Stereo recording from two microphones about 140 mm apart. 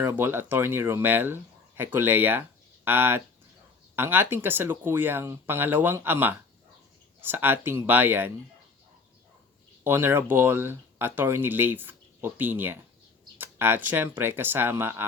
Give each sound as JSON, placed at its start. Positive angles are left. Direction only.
{"t": 0.0, "sound": "speech", "side_deg": -15}
{"t": 9.8, "sound": "speech", "side_deg": -15}